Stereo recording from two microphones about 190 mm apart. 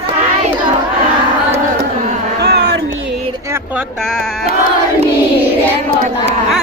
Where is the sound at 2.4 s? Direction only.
60° right (ahead or behind).